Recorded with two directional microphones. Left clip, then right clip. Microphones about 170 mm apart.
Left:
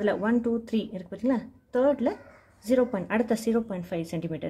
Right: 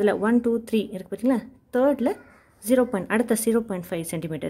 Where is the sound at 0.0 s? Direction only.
30° right (ahead or behind).